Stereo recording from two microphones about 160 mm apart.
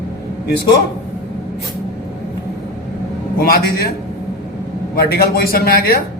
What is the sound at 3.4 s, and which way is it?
Speech, 70° left (ahead or behind).